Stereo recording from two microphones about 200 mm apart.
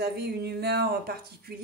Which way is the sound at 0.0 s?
55° right (ahead or behind).